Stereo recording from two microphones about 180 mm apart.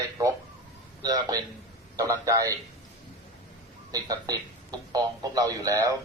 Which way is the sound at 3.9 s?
20° right (ahead or behind).